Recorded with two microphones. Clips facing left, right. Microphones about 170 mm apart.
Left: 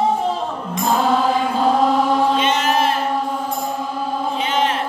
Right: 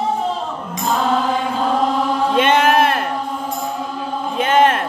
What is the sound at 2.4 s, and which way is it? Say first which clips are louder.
Chant: right 4 dB; 55° right (ahead or behind).